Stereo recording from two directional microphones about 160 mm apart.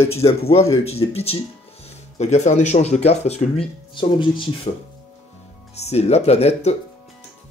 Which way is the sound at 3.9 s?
30° left (ahead or behind).